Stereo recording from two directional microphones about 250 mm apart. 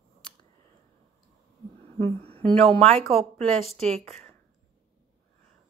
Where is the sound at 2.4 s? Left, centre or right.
Centre.